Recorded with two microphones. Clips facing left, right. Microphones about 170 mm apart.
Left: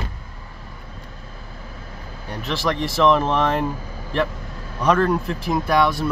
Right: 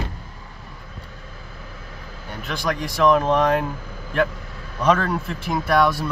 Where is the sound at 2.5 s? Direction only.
Centre (ahead or behind).